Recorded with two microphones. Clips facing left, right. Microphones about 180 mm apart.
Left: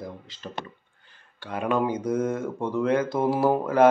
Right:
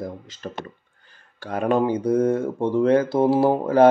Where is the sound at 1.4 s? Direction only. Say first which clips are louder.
Right 5 dB; 40° right (ahead or behind).